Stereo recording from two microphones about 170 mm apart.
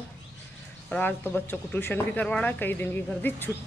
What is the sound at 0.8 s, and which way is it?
Speech, 10° left (ahead or behind).